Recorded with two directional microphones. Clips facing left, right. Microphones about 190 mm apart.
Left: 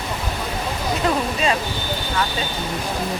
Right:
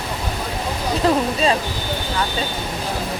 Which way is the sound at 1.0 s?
30° right (ahead or behind).